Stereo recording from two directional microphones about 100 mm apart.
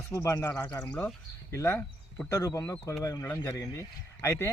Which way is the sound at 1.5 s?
25° left (ahead or behind).